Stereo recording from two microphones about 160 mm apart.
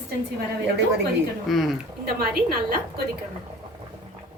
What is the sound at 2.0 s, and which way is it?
Speech, 75° right (ahead or behind).